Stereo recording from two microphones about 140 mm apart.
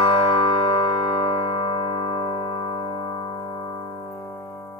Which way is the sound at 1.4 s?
35° left (ahead or behind).